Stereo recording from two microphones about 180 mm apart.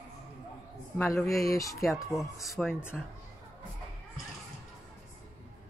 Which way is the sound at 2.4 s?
Centre (ahead or behind).